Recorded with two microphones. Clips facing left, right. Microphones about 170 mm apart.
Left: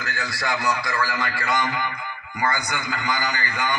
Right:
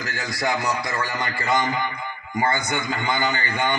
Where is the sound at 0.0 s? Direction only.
20° right (ahead or behind).